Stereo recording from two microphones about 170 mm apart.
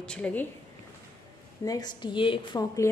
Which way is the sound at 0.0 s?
5° left (ahead or behind).